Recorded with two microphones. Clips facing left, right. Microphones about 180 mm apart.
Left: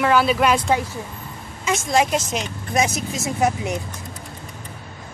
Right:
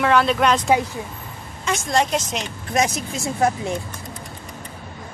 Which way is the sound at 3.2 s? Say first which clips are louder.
Right 1 dB; 15° left (ahead or behind).